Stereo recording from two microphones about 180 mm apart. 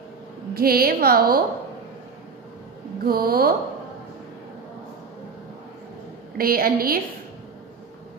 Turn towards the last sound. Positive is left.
turn(degrees=-55)  # may be behind; listen again after turning